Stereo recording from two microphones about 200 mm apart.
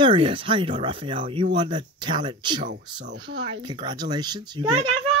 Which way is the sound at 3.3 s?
65° right (ahead or behind).